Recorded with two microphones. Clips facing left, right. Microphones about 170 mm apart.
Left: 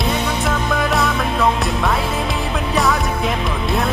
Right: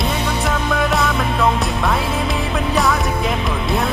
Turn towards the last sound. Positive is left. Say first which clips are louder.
# even
turn(degrees=0)  # may be behind; listen again after turning